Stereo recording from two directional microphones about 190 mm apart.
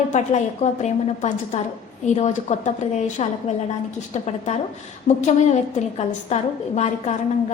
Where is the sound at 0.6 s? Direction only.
40° left (ahead or behind).